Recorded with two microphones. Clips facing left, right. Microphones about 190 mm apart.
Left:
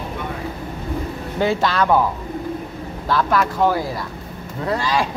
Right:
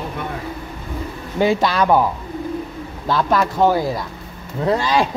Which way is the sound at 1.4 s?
15° right (ahead or behind).